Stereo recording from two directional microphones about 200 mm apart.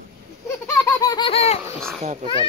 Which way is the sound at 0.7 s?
15° left (ahead or behind).